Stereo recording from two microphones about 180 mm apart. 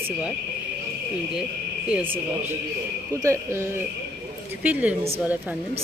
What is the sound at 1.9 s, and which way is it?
A woman's voice, 10° right (ahead or behind).